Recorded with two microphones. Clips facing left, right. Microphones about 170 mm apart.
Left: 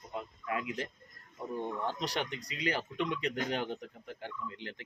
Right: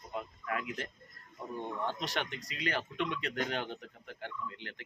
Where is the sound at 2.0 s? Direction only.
40° left (ahead or behind).